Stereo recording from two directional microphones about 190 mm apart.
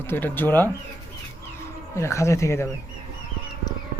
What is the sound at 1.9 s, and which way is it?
Speech, 15° left (ahead or behind).